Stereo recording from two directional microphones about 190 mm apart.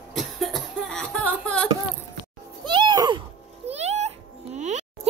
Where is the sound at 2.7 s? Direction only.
25° right (ahead or behind).